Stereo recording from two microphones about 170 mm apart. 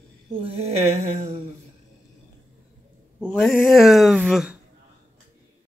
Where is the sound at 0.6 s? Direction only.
40° right (ahead or behind).